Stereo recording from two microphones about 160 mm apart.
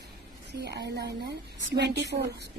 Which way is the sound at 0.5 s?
90° right.